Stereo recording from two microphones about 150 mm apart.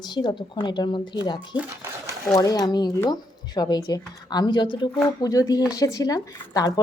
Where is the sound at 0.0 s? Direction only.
30° left (ahead or behind).